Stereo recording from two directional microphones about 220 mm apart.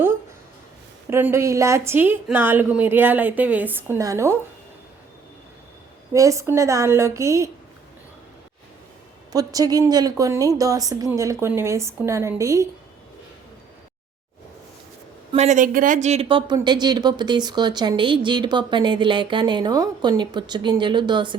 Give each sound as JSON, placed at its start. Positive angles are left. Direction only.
{"t": 1.1, "sound": "a woman's voice", "side_deg": -10}
{"t": 6.1, "sound": "a woman's voice", "side_deg": -15}
{"t": 9.3, "sound": "a woman's voice", "side_deg": -15}
{"t": 15.3, "sound": "speech", "side_deg": -30}